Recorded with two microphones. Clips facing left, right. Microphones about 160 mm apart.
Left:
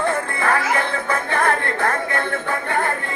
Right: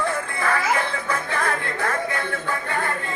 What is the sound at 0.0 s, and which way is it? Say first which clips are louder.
Music: left 3 dB; 55° left (ahead or behind).